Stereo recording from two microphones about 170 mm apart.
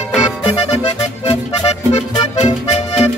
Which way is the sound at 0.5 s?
35° left (ahead or behind).